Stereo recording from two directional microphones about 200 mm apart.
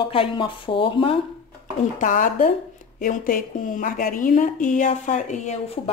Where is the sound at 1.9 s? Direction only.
40° left (ahead or behind).